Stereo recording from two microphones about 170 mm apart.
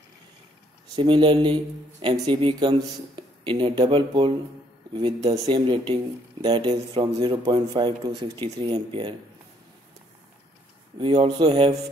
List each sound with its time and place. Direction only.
0.9 s speech: 30° right (ahead or behind)
11.0 s speech: 30° right (ahead or behind)